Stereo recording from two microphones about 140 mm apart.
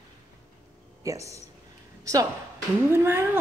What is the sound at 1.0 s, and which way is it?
A woman's voice, 20° right (ahead or behind).